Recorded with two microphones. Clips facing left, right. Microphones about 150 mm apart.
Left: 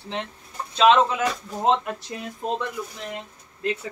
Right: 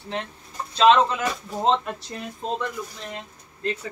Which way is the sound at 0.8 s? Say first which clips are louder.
Even; 5° left (ahead or behind).